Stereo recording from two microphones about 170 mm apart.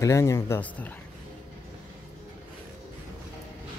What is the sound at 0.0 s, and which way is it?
Speech, 15° left (ahead or behind).